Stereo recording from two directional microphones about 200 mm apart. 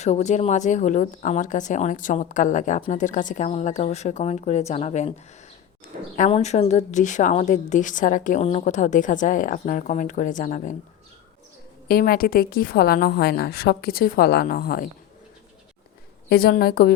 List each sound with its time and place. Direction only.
0.0 s speech: 35° left (ahead or behind)
6.1 s speech: 35° left (ahead or behind)
11.9 s a woman's voice: 45° left (ahead or behind)
16.3 s a woman's voice: 50° left (ahead or behind)